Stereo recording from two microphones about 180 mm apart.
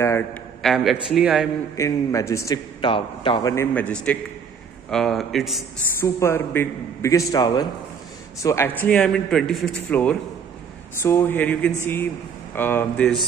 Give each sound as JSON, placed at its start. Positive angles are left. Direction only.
{"t": 0.0, "sound": "a sound", "side_deg": 15}
{"t": 0.6, "sound": "a man's voice", "side_deg": 0}
{"t": 1.8, "sound": "a man's voice", "side_deg": 15}
{"t": 3.7, "sound": "a man's voice", "side_deg": 5}
{"t": 5.9, "sound": "a man's voice", "side_deg": 15}